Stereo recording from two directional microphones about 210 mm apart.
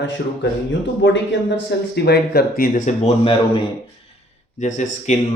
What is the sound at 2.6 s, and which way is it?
Speech, 35° left (ahead or behind).